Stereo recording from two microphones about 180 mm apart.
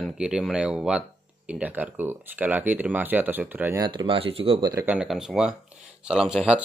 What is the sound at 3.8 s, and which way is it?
Speech, 25° right (ahead or behind).